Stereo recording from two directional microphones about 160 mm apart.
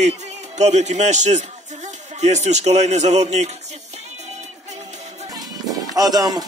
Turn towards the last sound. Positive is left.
turn(degrees=-25)  # may be behind; listen again after turning